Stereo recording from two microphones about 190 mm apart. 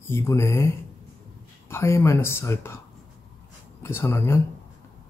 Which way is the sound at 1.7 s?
15° left (ahead or behind).